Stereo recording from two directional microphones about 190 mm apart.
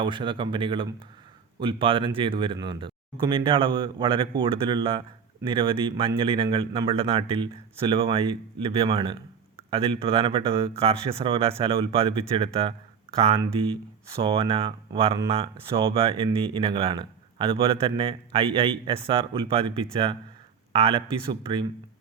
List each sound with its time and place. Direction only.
0.0 s speech: 25° right (ahead or behind)